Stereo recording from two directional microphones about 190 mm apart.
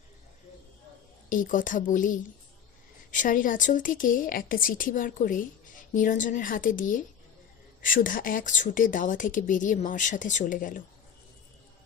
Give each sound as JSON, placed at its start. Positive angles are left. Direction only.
{"t": 1.3, "sound": "speech", "side_deg": 45}